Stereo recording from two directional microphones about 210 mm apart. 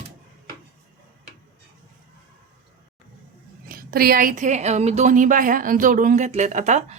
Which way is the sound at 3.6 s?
45° right (ahead or behind).